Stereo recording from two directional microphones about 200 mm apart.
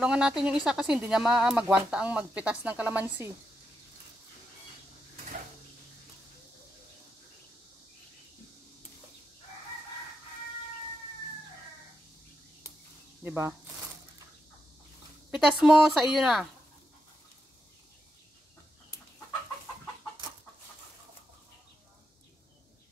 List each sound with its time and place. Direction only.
0.0 s speech: 5° right (ahead or behind)
13.2 s speech: 10° right (ahead or behind)
15.3 s speech: 5° right (ahead or behind)